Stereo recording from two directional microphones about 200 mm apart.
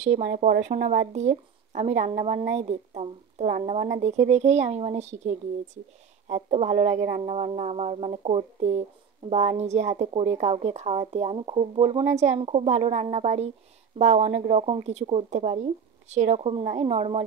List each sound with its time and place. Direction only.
0.0 s speech: 35° right (ahead or behind)